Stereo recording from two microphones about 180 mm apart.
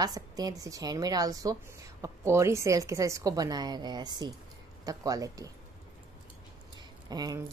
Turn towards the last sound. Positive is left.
turn(degrees=-20)  # may be behind; listen again after turning